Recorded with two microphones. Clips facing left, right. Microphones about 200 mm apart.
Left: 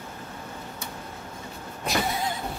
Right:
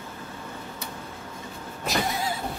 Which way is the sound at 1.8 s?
Centre (ahead or behind).